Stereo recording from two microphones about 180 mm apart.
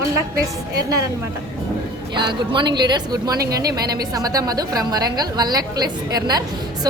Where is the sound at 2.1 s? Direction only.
25° right (ahead or behind).